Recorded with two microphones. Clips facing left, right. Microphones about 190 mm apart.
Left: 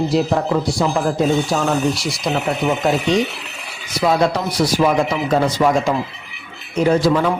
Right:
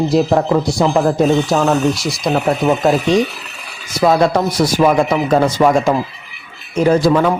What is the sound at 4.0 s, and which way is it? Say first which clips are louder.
Speech: right 4 dB; 50° right (ahead or behind).